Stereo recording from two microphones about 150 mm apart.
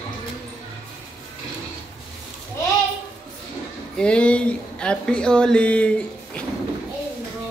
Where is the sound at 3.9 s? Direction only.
5° left (ahead or behind).